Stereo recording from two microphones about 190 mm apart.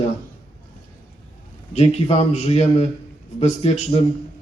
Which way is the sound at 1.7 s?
35° left (ahead or behind).